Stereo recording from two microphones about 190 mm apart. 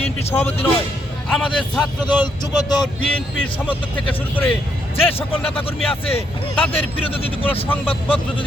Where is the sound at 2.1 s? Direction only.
20° left (ahead or behind).